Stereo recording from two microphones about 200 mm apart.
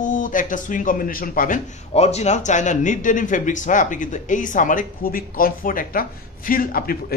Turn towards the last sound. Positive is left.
turn(degrees=45)  # may be behind; listen again after turning